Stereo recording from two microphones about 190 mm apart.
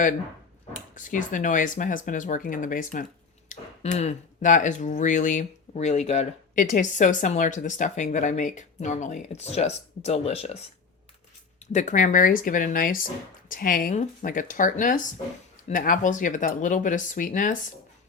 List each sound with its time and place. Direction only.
0.9 s speech: 45° left (ahead or behind)
11.6 s speech: 40° left (ahead or behind)